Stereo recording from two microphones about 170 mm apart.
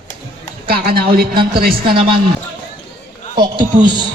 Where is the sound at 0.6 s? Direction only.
65° right (ahead or behind).